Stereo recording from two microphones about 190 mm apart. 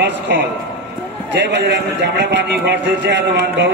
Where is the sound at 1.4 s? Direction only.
65° right (ahead or behind).